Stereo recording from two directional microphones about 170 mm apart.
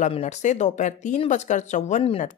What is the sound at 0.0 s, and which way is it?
A woman's voice, 40° left (ahead or behind).